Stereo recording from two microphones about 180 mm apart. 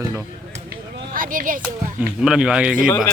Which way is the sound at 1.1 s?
50° right (ahead or behind).